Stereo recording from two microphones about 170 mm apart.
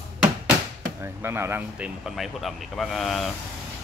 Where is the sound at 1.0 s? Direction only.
15° right (ahead or behind).